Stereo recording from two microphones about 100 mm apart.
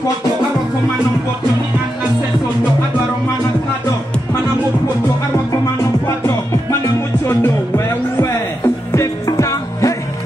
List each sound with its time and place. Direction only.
7.2 s music: 25° left (ahead or behind)